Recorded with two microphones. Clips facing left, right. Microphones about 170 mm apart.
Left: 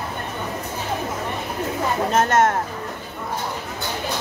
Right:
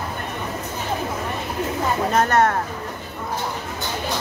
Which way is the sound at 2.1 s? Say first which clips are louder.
Even; 20° left (ahead or behind).